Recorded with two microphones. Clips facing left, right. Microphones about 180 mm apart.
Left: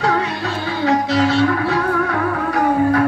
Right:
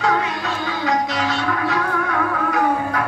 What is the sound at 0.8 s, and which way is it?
Music, 30° left (ahead or behind).